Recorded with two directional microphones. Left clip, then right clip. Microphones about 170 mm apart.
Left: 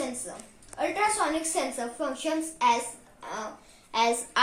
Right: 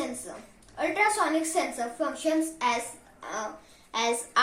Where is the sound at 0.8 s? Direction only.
20° left (ahead or behind).